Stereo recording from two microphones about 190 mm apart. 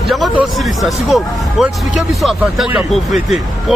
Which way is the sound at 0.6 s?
Centre (ahead or behind).